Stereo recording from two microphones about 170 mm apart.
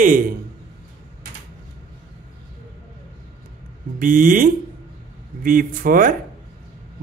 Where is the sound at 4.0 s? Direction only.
55° right (ahead or behind).